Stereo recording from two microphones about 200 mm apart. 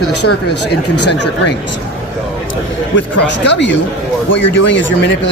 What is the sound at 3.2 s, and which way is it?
Speech, 60° left (ahead or behind).